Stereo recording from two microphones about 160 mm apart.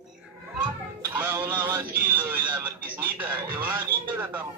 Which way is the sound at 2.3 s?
10° right (ahead or behind).